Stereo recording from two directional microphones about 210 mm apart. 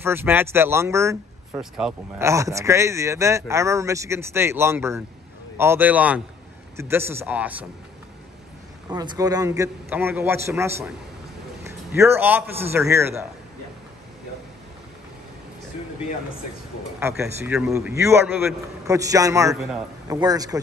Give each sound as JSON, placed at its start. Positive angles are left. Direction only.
{"t": 0.0, "sound": "speech", "side_deg": -10}
{"t": 8.9, "sound": "a man's voice", "side_deg": -20}
{"t": 17.0, "sound": "speech", "side_deg": -10}
{"t": 19.5, "sound": "speech", "side_deg": 0}
{"t": 20.1, "sound": "speech", "side_deg": -20}